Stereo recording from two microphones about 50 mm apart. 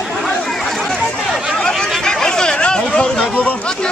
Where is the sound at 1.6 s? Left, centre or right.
Centre.